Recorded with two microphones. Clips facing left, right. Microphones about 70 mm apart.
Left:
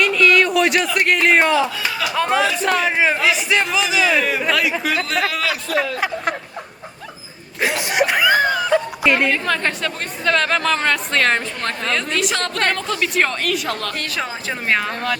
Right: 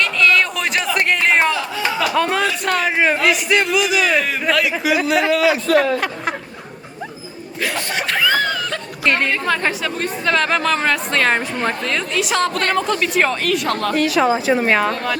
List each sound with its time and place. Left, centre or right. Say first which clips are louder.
0.0 s a sound: left 1 dB; centre
2.0 s a woman's voice: even; centre
7.6 s speech: left 4 dB; centre
9.0 s a woman's voice: right 1 dB; centre